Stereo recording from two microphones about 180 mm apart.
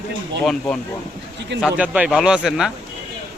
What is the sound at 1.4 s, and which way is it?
Speech, 75° right (ahead or behind).